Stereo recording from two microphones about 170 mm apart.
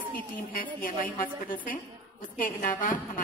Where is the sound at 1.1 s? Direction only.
55° left (ahead or behind).